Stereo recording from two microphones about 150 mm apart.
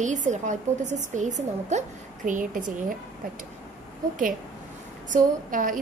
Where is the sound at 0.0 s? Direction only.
55° right (ahead or behind).